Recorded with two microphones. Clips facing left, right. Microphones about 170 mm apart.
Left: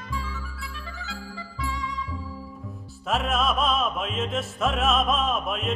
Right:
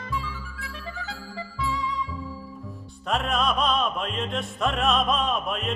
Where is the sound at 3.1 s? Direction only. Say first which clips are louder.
Even; centre (ahead or behind).